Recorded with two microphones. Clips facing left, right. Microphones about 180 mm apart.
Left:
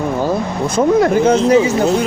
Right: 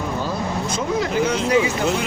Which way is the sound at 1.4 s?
35° left (ahead or behind).